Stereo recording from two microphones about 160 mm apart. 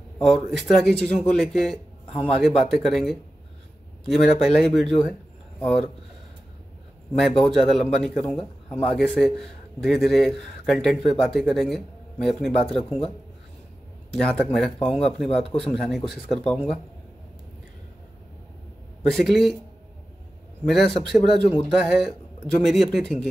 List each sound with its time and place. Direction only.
0.2 s speech: centre (ahead or behind)
7.2 s speech: centre (ahead or behind)
14.2 s speech: 5° left (ahead or behind)
14.8 s speech: 35° left (ahead or behind)
15.7 s speech: centre (ahead or behind)
19.0 s speech: centre (ahead or behind)
20.6 s speech: centre (ahead or behind)